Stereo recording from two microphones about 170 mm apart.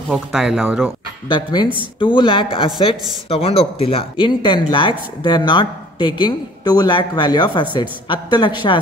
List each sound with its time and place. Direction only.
0.1 s speech: centre (ahead or behind)
1.3 s speech: 25° left (ahead or behind)